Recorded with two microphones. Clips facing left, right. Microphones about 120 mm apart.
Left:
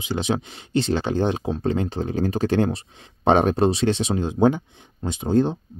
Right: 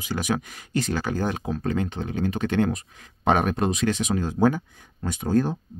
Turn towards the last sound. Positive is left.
turn(degrees=20)  # may be behind; listen again after turning